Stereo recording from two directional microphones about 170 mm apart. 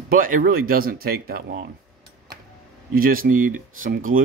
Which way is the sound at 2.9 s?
60° right (ahead or behind).